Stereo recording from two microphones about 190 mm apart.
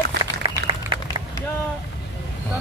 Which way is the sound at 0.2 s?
20° right (ahead or behind).